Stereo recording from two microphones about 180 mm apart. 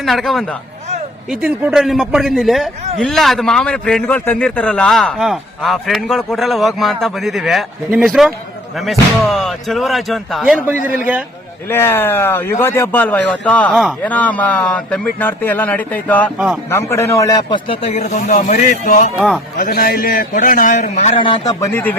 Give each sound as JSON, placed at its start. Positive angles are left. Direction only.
{"t": 0.0, "sound": "a man's voice", "side_deg": 0}
{"t": 11.7, "sound": "a man's voice", "side_deg": 10}
{"t": 21.2, "sound": "speech", "side_deg": 25}